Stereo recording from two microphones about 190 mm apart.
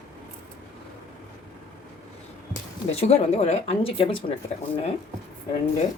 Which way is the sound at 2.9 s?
35° left (ahead or behind).